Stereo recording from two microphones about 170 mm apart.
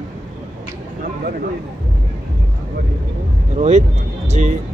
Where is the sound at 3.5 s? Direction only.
40° right (ahead or behind).